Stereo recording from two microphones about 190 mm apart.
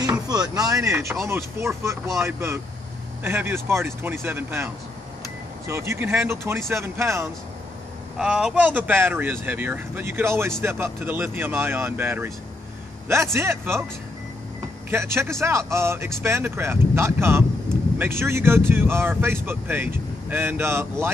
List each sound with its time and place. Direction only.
0.3 s speech: 20° right (ahead or behind)
5.7 s speech: 15° right (ahead or behind)
8.2 s speech: 5° right (ahead or behind)
14.9 s speech: 15° right (ahead or behind)